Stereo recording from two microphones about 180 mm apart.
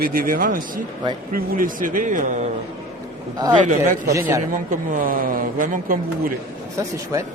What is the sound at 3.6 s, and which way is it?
Speech, 45° right (ahead or behind).